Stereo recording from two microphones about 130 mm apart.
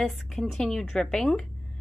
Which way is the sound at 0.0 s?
Centre (ahead or behind).